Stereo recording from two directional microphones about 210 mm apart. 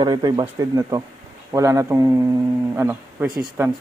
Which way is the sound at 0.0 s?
20° right (ahead or behind).